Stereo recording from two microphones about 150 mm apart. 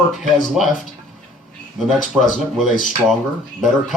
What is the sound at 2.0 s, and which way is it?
Speech, 60° left (ahead or behind).